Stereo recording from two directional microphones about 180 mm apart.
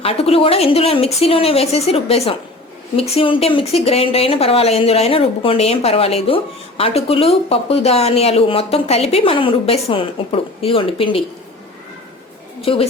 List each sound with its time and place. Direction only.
0.0 s speech: 35° left (ahead or behind)
12.6 s speech: 30° left (ahead or behind)